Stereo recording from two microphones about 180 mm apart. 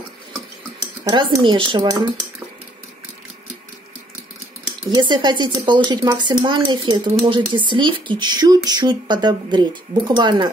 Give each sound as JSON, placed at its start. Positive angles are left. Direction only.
{"t": 1.1, "sound": "speech", "side_deg": -25}
{"t": 4.9, "sound": "speech", "side_deg": -25}